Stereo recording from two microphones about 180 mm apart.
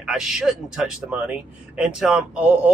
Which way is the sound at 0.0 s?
Centre (ahead or behind).